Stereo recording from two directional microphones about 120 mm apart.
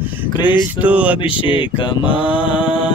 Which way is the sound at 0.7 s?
10° right (ahead or behind).